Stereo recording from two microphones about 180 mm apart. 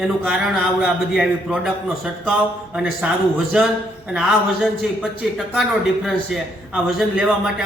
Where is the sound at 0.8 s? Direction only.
5° right (ahead or behind).